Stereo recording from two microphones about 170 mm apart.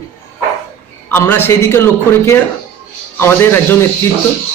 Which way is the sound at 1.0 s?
10° left (ahead or behind).